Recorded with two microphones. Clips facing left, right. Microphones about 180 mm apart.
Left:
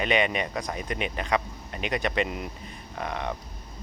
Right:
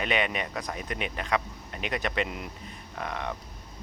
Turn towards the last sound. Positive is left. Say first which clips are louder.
# left 2 dB
turn(degrees=0)  # may be behind; listen again after turning